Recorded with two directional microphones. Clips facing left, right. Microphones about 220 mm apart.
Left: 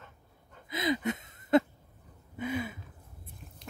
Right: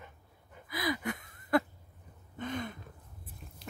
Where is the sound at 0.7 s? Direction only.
20° left (ahead or behind).